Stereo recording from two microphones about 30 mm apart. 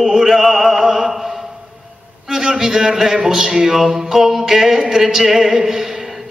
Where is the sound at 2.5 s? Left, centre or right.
Centre.